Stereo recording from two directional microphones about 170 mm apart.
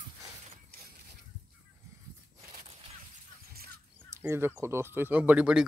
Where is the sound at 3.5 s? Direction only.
65° right (ahead or behind).